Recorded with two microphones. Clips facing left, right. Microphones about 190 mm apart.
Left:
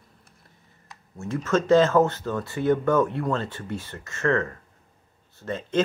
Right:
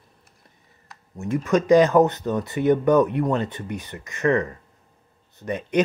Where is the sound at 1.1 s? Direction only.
15° right (ahead or behind).